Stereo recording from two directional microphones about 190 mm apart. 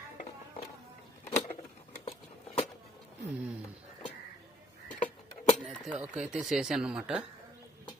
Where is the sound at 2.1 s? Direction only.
30° left (ahead or behind).